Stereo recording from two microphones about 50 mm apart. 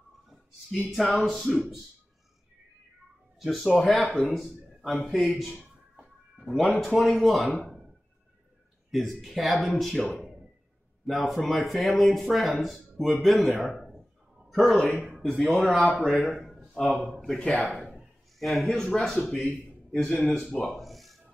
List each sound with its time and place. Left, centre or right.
0.3 s a sound: centre
0.9 s speech: centre
3.3 s speech: centre
5.9 s music: centre
6.9 s speech: centre
8.9 s speech: centre
11.1 s speech: centre
16.4 s a sound: centre
17.6 s speech: centre
19.3 s a man's voice: centre
20.3 s speech: left
20.6 s a sound: centre